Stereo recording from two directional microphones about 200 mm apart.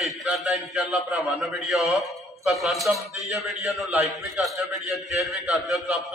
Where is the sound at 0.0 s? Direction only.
Centre (ahead or behind).